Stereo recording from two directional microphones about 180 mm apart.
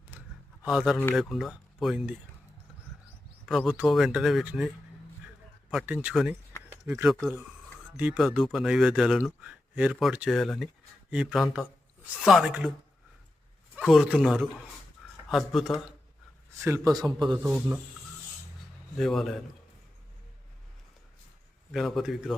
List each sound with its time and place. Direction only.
0.6 s speech: 5° right (ahead or behind)
3.4 s speech: centre (ahead or behind)
5.7 s speech: 10° right (ahead or behind)
6.7 s a sound: 10° right (ahead or behind)
7.9 s speech: 5° right (ahead or behind)
13.7 s speech: 5° right (ahead or behind)
16.6 s speech: 15° right (ahead or behind)
18.9 s speech: centre (ahead or behind)
21.7 s speech: centre (ahead or behind)